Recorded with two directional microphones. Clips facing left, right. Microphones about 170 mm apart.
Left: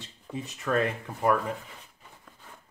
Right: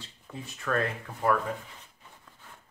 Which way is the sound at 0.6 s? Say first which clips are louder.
Left 2 dB; 20° left (ahead or behind).